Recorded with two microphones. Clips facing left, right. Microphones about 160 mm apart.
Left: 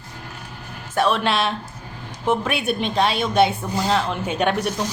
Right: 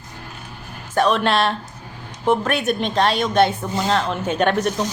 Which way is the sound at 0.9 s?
5° left (ahead or behind).